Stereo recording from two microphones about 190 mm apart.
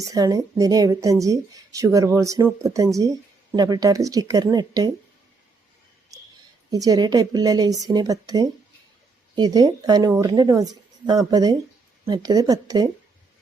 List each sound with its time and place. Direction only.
0.0 s speech: 20° right (ahead or behind)
6.7 s speech: 20° right (ahead or behind)